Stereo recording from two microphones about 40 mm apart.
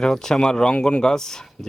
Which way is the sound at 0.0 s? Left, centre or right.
Centre.